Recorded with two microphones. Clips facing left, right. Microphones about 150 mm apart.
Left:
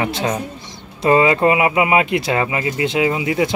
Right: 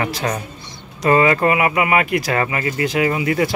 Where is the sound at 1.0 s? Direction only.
20° left (ahead or behind).